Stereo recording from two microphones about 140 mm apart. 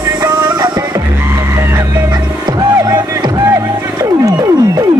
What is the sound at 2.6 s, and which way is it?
Music, 25° right (ahead or behind).